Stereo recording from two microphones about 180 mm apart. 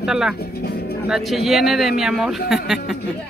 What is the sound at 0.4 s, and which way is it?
Speech, 60° left (ahead or behind).